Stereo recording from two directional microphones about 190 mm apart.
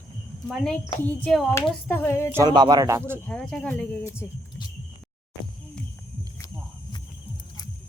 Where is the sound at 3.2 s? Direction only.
5° left (ahead or behind).